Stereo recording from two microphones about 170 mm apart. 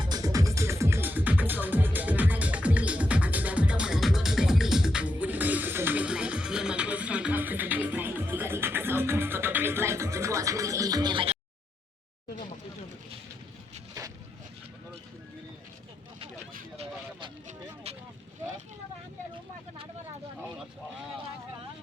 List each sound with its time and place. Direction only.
0.0 s music: 25° right (ahead or behind)
16.7 s vehicle: 35° right (ahead or behind)
17.9 s boat: 35° right (ahead or behind)